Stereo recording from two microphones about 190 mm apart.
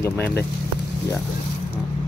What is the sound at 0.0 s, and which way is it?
Speech, 15° left (ahead or behind).